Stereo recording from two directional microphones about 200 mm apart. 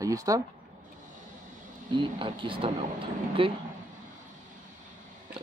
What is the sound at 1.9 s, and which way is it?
Speech, 25° right (ahead or behind).